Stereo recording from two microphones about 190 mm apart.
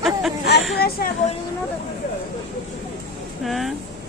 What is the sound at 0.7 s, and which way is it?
Speech, 55° left (ahead or behind).